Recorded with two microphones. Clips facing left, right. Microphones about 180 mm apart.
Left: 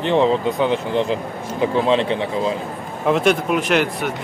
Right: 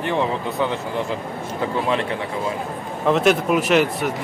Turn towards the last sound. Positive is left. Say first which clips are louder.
# right 1 dB
turn(degrees=0)  # may be behind; listen again after turning